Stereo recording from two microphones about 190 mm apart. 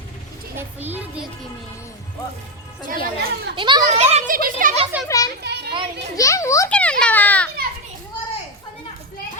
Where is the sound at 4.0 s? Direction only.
40° right (ahead or behind).